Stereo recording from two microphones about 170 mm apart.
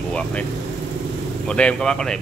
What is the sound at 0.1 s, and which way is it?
Speech, 5° left (ahead or behind).